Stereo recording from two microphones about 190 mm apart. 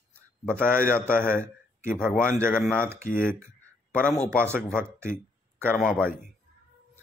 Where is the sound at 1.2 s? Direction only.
10° right (ahead or behind).